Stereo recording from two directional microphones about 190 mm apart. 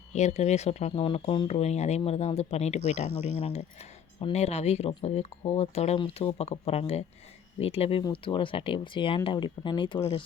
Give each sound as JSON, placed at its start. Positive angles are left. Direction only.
{"t": 0.1, "sound": "speech", "side_deg": 35}
{"t": 4.2, "sound": "speech", "side_deg": 35}